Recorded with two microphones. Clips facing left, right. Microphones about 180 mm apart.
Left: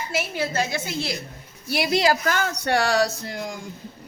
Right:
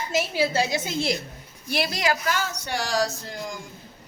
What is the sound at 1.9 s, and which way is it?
Speech, 30° left (ahead or behind).